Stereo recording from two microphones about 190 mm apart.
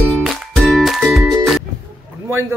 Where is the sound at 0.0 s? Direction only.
5° left (ahead or behind).